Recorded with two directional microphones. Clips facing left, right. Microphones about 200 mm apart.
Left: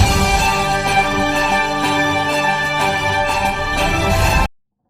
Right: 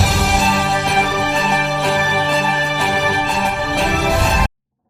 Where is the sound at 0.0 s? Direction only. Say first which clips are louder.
Even; centre (ahead or behind).